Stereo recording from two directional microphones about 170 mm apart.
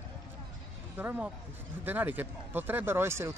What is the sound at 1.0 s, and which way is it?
Speech, 10° right (ahead or behind).